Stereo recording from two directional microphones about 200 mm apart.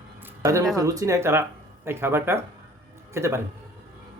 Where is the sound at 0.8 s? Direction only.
15° right (ahead or behind).